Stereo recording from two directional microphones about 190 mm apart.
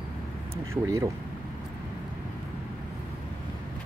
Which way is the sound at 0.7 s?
15° right (ahead or behind).